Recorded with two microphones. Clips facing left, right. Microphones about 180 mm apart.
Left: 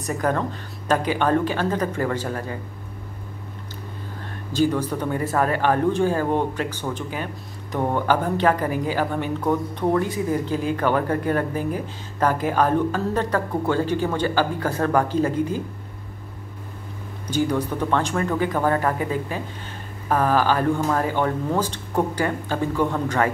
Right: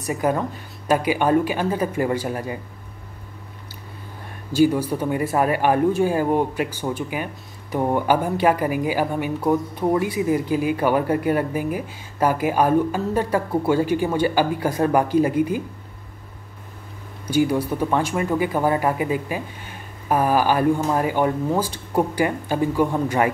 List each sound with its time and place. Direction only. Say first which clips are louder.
0.0 s speech: right 1 dB; 10° right (ahead or behind)
4.5 s speech: right 3 dB; 10° right (ahead or behind)
17.3 s speech: right 3 dB; 10° right (ahead or behind)